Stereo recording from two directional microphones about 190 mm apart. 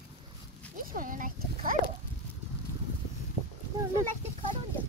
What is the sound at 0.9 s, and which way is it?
Speech, 45° right (ahead or behind).